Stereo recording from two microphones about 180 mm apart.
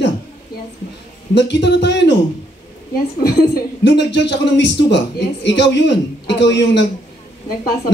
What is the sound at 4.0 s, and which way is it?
Speech, 75° left (ahead or behind).